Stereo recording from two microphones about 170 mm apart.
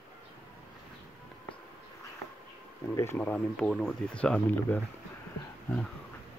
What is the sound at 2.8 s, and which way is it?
Speech, 15° left (ahead or behind).